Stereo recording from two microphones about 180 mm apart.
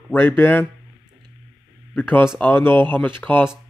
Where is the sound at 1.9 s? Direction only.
10° left (ahead or behind).